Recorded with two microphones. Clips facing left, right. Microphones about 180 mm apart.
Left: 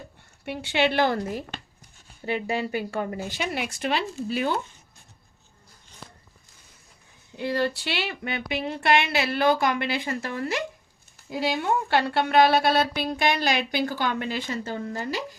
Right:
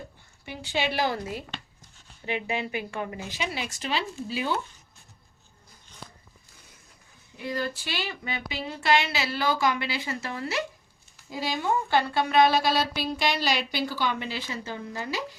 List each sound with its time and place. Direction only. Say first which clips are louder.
0.4 s speech: left 5 dB; 65° left (ahead or behind); by 1.6 s 50° left (ahead or behind)
2.2 s speech: left 3 dB; 40° left (ahead or behind); by 4.0 s 55° left (ahead or behind)
7.3 s speech: left 5 dB; 70° left (ahead or behind); by 10.6 s 50° left (ahead or behind)
11.3 s speech: left 3 dB; 60° left (ahead or behind); by 15.4 s 45° left (ahead or behind)